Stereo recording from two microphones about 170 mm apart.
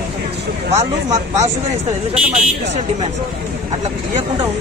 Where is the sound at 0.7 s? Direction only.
40° right (ahead or behind).